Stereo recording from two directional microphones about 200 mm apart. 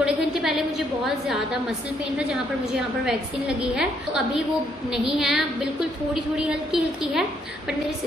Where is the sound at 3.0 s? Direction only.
5° right (ahead or behind).